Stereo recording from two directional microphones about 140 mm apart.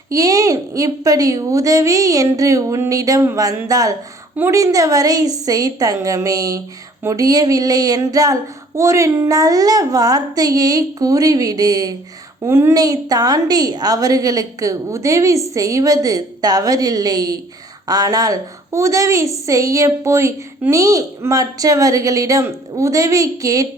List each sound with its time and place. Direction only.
0.1 s a woman's voice: 25° right (ahead or behind)